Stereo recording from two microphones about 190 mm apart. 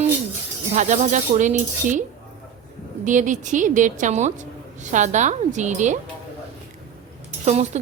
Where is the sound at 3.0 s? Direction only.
40° right (ahead or behind).